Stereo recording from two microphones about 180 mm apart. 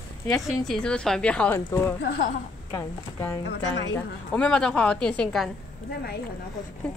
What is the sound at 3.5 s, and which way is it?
Speech, 80° left.